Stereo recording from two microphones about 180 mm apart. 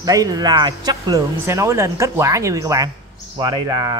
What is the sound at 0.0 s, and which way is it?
Speech, 20° right (ahead or behind).